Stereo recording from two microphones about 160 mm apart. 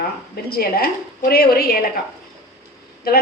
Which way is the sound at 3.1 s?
70° left (ahead or behind).